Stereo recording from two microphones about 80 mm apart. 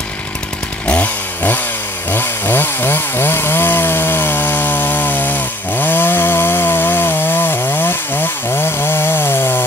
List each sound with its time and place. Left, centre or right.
0.8 s chainsaw: centre